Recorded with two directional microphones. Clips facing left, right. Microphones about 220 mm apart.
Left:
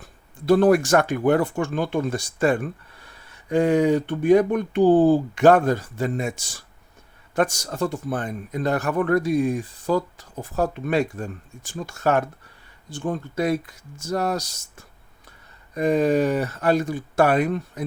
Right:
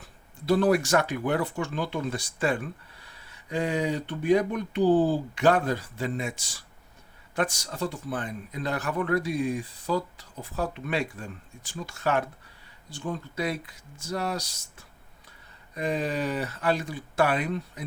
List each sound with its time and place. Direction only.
0.4 s speech: 50° left (ahead or behind)